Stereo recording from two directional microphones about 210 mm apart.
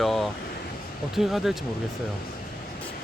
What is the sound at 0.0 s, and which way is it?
Speech, centre (ahead or behind).